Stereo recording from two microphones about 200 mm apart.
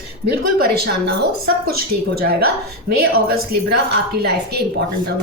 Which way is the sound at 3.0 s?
50° right (ahead or behind).